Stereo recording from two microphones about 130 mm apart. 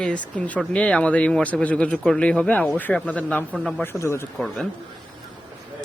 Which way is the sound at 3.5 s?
Centre (ahead or behind).